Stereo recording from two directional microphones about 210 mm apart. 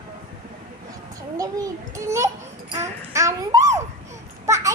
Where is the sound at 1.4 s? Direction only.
15° right (ahead or behind).